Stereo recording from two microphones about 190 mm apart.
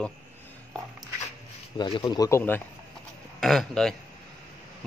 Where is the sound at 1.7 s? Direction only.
25° left (ahead or behind).